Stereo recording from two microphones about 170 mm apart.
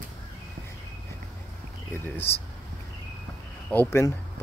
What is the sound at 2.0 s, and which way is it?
Speech, 10° left (ahead or behind).